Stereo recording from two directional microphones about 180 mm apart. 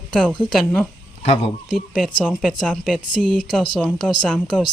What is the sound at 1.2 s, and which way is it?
Speech, 30° left (ahead or behind).